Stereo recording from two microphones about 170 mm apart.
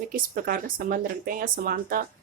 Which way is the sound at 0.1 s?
60° right (ahead or behind).